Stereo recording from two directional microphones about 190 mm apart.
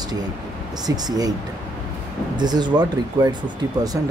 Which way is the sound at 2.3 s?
20° right (ahead or behind).